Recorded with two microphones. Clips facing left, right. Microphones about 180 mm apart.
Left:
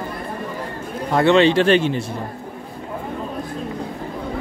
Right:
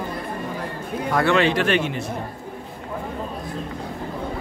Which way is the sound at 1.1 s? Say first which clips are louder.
Left 5 dB; 25° left (ahead or behind).